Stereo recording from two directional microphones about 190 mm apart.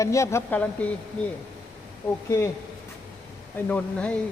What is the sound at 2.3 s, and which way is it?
Speech, 15° left (ahead or behind).